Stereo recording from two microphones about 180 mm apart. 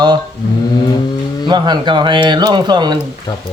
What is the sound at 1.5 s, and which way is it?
A man's voice, 25° right (ahead or behind).